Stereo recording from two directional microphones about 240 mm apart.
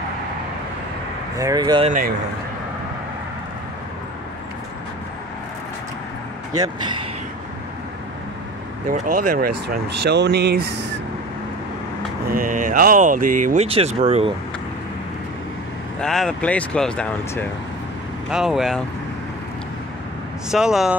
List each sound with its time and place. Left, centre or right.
1.4 s speech: centre
1.9 s speech: right
6.6 s speech: centre
9.0 s speech: right
12.3 s speech: right
16.0 s speech: centre
20.5 s speech: centre